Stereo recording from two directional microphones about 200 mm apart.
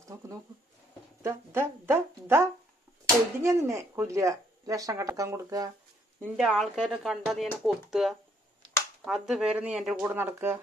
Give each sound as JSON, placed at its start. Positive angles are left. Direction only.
{"t": 0.1, "sound": "speech", "side_deg": -15}
{"t": 6.2, "sound": "speech", "side_deg": 0}